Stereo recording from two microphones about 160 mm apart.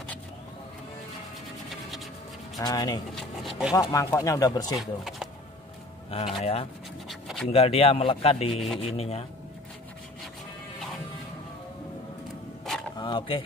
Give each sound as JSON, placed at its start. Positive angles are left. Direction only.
{"t": 2.6, "sound": "speech", "side_deg": 25}
{"t": 3.2, "sound": "speech", "side_deg": 0}
{"t": 3.7, "sound": "speech", "side_deg": 20}
{"t": 4.7, "sound": "speech", "side_deg": 0}
{"t": 6.0, "sound": "a man's voice", "side_deg": 40}
{"t": 7.1, "sound": "a sound", "side_deg": 0}
{"t": 7.5, "sound": "a man's voice", "side_deg": 35}
{"t": 12.9, "sound": "a sound", "side_deg": 30}